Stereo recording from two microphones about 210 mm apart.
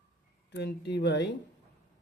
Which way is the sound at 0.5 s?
55° left (ahead or behind).